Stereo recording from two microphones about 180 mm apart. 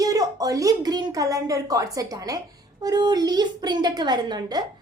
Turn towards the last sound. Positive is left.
turn(degrees=-25)  # may be behind; listen again after turning